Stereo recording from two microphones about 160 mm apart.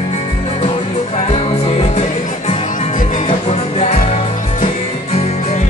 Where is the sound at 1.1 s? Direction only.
40° left (ahead or behind).